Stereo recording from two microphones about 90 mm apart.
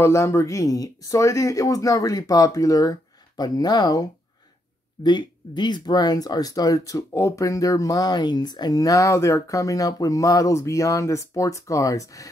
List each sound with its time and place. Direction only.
0.0 s speech: 30° left (ahead or behind)
5.0 s speech: 55° left (ahead or behind); by 12.3 s 40° left (ahead or behind)